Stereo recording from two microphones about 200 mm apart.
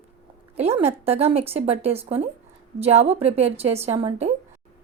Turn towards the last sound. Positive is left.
turn(degrees=-30)  # may be behind; listen again after turning